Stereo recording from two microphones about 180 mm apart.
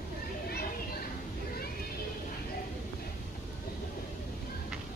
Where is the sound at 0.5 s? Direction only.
60° left (ahead or behind).